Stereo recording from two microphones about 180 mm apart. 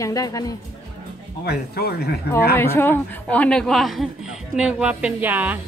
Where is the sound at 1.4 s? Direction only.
60° left (ahead or behind).